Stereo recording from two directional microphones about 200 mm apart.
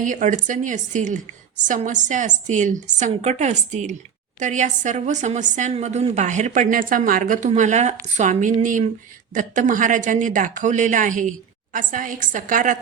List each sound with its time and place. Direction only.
0.0 s a woman's voice: 40° right (ahead or behind)